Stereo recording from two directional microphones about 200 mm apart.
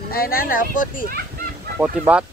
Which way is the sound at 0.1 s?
50° left (ahead or behind).